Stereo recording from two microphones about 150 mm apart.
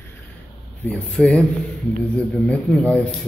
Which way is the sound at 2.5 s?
10° left (ahead or behind).